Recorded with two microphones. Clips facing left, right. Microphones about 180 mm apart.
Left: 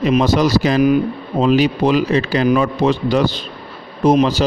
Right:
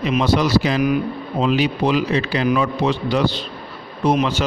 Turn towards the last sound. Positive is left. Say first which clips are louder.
# left 5 dB
turn(degrees=35)  # may be behind; listen again after turning